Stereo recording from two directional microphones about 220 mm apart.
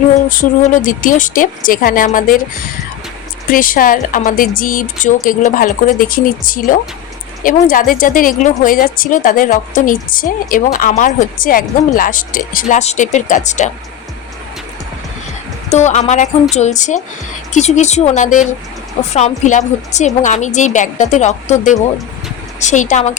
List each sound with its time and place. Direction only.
0.3 s a woman's voice: 40° left (ahead or behind)
3.5 s a woman's voice: 40° left (ahead or behind)
15.7 s a woman's voice: 30° left (ahead or behind)